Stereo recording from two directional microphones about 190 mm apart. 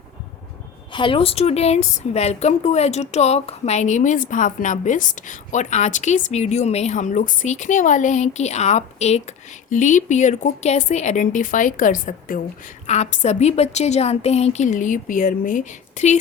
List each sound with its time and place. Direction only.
0.9 s speech: 25° left (ahead or behind)